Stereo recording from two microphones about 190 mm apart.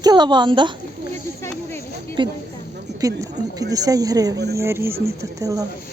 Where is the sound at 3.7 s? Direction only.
20° right (ahead or behind).